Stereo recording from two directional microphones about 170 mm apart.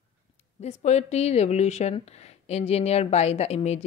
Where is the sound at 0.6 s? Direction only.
40° left (ahead or behind).